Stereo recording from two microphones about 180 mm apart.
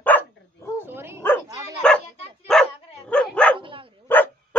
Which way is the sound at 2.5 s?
5° left (ahead or behind).